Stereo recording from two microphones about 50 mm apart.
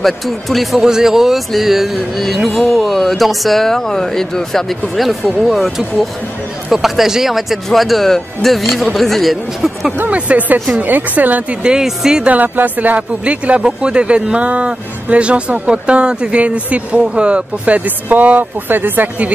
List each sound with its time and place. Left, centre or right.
0.0 s speech: centre
0.7 s speech: centre
10.0 s speech: right
11.6 s speech: centre
12.3 s speech: right